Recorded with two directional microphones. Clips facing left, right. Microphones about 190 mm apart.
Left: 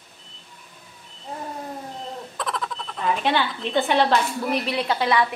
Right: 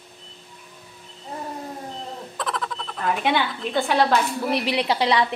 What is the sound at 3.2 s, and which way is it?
Speech, 10° right (ahead or behind).